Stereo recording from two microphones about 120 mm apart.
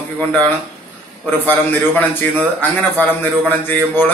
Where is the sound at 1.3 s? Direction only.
15° left (ahead or behind).